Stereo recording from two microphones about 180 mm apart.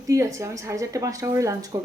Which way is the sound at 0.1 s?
15° right (ahead or behind).